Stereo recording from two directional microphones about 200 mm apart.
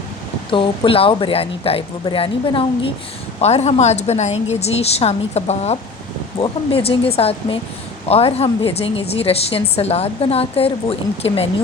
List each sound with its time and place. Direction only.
0.5 s a woman's voice: 25° left (ahead or behind)